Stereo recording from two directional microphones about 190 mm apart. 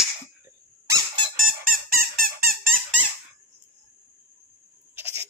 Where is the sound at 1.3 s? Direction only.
50° right (ahead or behind).